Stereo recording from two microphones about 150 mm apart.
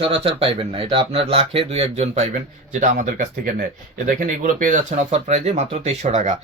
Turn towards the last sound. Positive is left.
turn(degrees=-55)  # may be behind; listen again after turning